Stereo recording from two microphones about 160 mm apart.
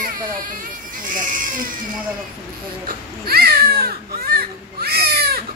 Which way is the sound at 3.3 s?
75° right (ahead or behind).